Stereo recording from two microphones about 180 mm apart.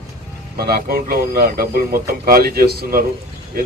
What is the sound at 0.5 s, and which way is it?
Speech, 60° right (ahead or behind).